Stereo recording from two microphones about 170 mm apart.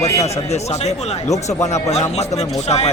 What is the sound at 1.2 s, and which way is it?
Speech, 20° left (ahead or behind).